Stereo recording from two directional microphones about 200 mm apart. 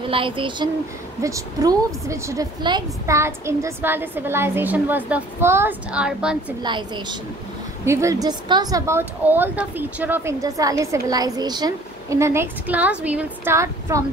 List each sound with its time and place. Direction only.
0.0 s a woman's voice: 25° right (ahead or behind); by 6.3 s 5° right (ahead or behind)
6.6 s a woman's voice: 20° right (ahead or behind)